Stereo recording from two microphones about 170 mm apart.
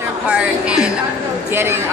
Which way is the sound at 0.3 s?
5° right (ahead or behind).